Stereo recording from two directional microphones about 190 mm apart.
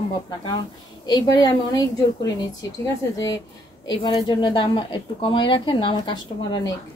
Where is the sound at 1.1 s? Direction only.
20° left (ahead or behind).